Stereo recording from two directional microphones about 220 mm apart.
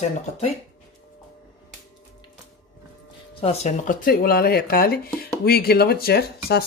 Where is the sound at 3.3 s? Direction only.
25° left (ahead or behind).